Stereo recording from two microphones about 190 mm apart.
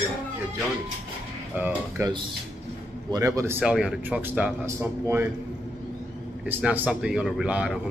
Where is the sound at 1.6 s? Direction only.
15° right (ahead or behind).